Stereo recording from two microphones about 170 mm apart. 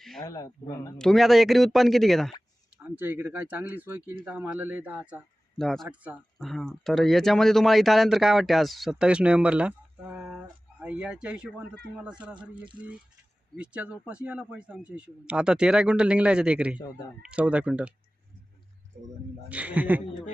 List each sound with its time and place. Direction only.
0.2 s speech: 20° left (ahead or behind)
0.9 s speech: centre (ahead or behind)
2.7 s speech: 10° right (ahead or behind)
5.5 s speech: centre (ahead or behind)
19.5 s speech: 10° right (ahead or behind)